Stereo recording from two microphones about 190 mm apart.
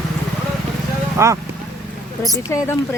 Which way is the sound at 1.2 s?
15° right (ahead or behind).